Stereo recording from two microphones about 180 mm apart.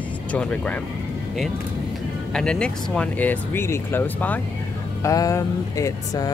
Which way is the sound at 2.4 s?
5° left (ahead or behind).